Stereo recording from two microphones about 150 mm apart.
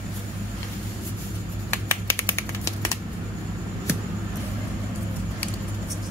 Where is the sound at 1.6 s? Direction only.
15° left (ahead or behind).